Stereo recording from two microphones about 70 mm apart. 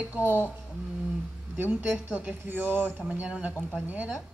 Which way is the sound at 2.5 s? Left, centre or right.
Right.